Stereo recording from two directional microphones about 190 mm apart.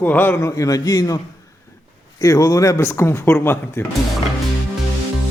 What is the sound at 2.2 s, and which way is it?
A man's voice, 15° left (ahead or behind).